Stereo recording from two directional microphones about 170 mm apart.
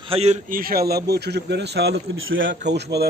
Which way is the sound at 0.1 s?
40° right (ahead or behind).